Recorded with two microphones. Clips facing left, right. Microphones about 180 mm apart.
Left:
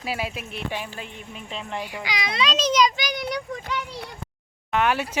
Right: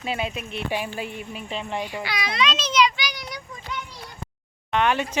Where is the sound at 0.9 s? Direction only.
10° right (ahead or behind).